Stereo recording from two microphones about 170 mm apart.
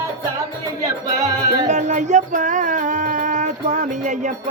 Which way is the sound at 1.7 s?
45° right (ahead or behind).